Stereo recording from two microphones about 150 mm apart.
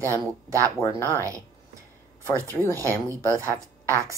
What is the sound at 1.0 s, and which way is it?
Speech, 20° right (ahead or behind).